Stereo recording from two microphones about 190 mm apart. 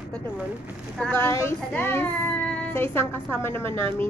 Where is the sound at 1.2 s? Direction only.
15° left (ahead or behind).